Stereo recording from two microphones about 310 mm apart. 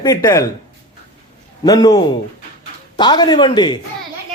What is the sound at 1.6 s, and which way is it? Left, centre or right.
Speech, centre.